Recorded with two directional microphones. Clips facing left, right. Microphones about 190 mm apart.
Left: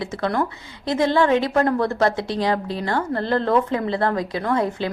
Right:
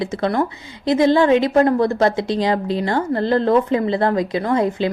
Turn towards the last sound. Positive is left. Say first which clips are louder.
# right 4 dB
turn(degrees=-15)  # may be behind; listen again after turning